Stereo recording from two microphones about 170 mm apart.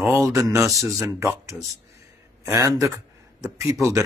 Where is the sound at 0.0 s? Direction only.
15° right (ahead or behind).